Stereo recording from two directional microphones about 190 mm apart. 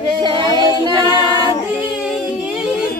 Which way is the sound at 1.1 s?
25° left (ahead or behind).